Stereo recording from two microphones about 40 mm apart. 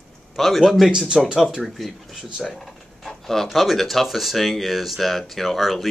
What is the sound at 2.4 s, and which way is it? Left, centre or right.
Drawer open or close, centre.